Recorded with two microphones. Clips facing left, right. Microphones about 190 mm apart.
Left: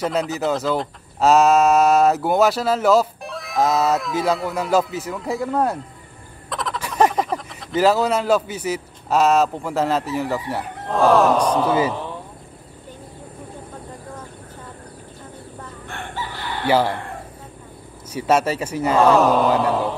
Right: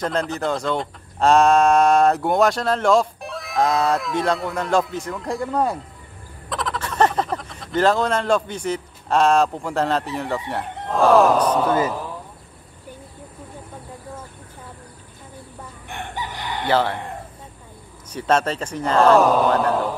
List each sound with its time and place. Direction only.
0.0 s speech: 5° left (ahead or behind)
11.7 s speech: 5° left (ahead or behind)
15.9 s chicken: 15° right (ahead or behind)
16.6 s speech: 10° left (ahead or behind)
18.1 s speech: 10° left (ahead or behind)